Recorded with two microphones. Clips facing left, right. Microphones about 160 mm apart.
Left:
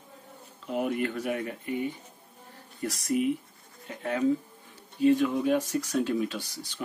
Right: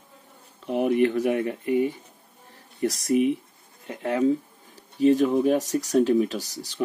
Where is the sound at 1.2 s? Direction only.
25° right (ahead or behind).